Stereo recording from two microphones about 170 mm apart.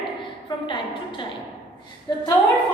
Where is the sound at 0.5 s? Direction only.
25° left (ahead or behind).